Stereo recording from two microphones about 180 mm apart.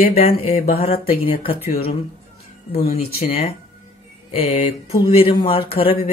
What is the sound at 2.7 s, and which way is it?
Speech, 35° left (ahead or behind).